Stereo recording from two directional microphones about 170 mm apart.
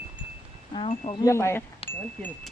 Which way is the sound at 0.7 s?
35° left (ahead or behind).